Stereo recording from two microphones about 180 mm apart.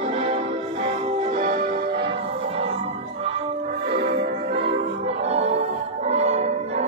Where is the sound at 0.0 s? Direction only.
40° right (ahead or behind); by 2.0 s 55° right (ahead or behind).